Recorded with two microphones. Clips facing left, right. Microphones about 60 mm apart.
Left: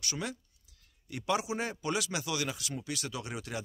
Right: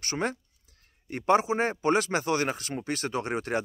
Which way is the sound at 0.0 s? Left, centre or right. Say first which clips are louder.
Right 7 dB; right.